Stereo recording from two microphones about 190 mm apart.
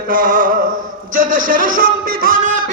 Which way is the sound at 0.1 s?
50° right (ahead or behind).